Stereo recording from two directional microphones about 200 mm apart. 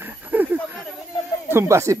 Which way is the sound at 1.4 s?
15° right (ahead or behind).